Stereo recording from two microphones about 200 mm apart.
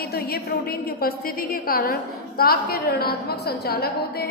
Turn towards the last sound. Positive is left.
turn(degrees=50)  # may be behind; listen again after turning